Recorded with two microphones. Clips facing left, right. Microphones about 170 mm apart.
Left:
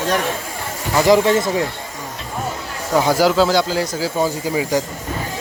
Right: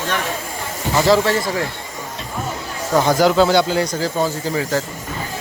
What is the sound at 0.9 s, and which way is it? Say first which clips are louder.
Speech: left 2 dB; 15° left (ahead or behind).